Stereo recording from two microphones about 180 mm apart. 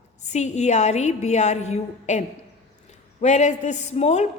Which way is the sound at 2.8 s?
40° left (ahead or behind).